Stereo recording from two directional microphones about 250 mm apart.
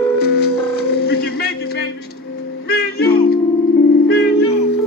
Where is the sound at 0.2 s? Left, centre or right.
Left.